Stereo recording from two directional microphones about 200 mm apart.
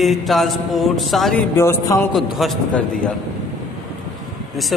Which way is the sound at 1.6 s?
15° left (ahead or behind).